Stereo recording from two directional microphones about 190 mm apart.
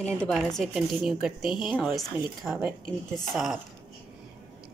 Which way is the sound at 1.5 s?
25° left (ahead or behind).